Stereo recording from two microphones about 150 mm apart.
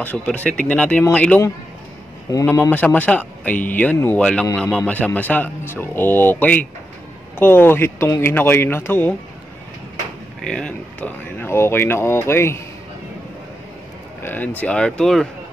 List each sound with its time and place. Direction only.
0.0 s speech: 10° left (ahead or behind)
2.4 s speech: 15° left (ahead or behind)
10.4 s speech: 5° left (ahead or behind)
14.2 s speech: 10° left (ahead or behind)